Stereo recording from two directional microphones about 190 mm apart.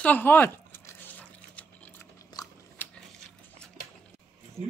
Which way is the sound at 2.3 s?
20° left (ahead or behind).